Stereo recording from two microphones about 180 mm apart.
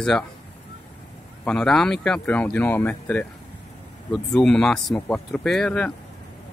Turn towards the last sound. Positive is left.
turn(degrees=5)  # may be behind; listen again after turning